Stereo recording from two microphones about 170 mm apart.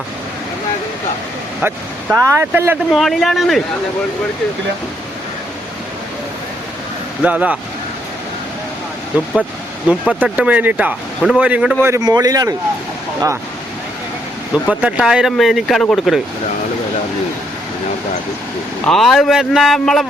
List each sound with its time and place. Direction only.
2.4 s speech: 10° right (ahead or behind)
2.9 s speech: centre (ahead or behind)
7.2 s speech: 10° right (ahead or behind)
9.1 s speech: 10° right (ahead or behind)
11.9 s a man's voice: 20° right (ahead or behind)
14.5 s speech: 5° right (ahead or behind)
18.9 s speech: centre (ahead or behind)